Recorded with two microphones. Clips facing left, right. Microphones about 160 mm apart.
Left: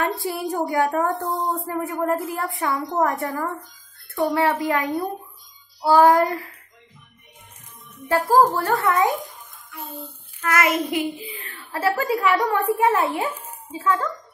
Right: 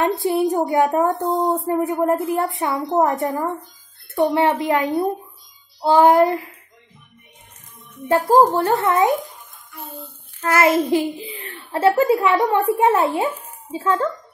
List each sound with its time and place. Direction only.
0.0 s a child's voice: 20° right (ahead or behind)
8.1 s a child's voice: 20° right (ahead or behind)
9.7 s child singing: centre (ahead or behind)
10.4 s a child's voice: 30° right (ahead or behind)